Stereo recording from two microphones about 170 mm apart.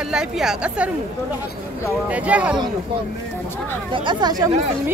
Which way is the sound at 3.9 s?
25° right (ahead or behind).